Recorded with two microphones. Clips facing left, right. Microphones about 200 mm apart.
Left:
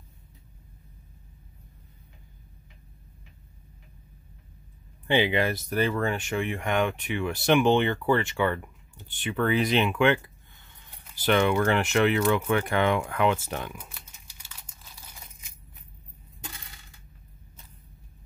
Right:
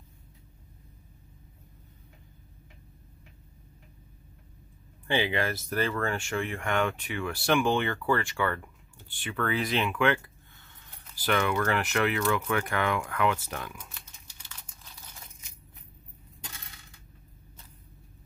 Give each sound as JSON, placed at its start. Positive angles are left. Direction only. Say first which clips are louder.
{"t": 5.0, "sound": "speech", "louder": "left 4 dB", "side_deg": 20}
{"t": 11.2, "sound": "speech", "louder": "left 5 dB", "side_deg": 25}
{"t": 13.7, "sound": "crumpling", "louder": "left 3 dB", "side_deg": 10}